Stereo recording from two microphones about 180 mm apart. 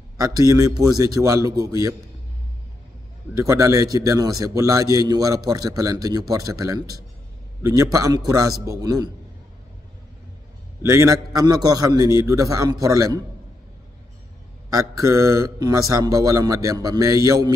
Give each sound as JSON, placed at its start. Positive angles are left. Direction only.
{"t": 0.2, "sound": "a man's voice", "side_deg": -20}
{"t": 3.3, "sound": "a man's voice", "side_deg": -15}
{"t": 10.8, "sound": "a man's voice", "side_deg": -15}
{"t": 14.7, "sound": "a man's voice", "side_deg": -20}